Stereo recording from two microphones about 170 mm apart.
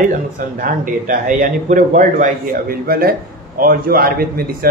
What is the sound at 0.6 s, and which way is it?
A man's voice, 55° right (ahead or behind).